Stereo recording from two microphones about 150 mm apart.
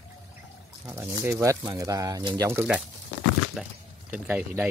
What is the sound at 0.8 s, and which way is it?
Speech, 20° right (ahead or behind).